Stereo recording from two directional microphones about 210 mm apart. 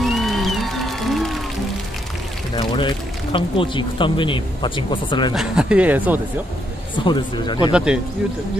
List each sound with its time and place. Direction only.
0.0 s music: centre (ahead or behind)
2.5 s speech: 20° left (ahead or behind)
5.3 s speech: centre (ahead or behind)
7.1 s speech: 20° left (ahead or behind)
7.7 s speech: 5° right (ahead or behind)